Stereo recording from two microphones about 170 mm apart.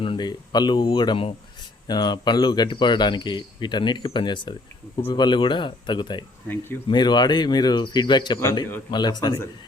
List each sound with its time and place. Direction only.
0.0 s speech: 30° left (ahead or behind)